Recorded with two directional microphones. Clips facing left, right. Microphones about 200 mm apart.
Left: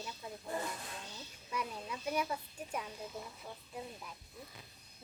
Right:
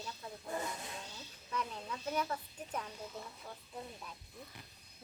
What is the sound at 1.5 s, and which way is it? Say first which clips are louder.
A child's voice: even; 10° left (ahead or behind).